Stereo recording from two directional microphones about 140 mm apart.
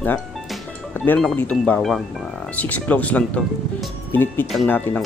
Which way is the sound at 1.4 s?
10° left (ahead or behind).